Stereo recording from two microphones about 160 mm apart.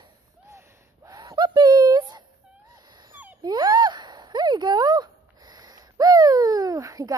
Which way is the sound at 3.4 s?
25° right (ahead or behind).